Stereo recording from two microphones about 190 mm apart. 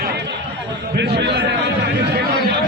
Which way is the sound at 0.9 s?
60° right (ahead or behind).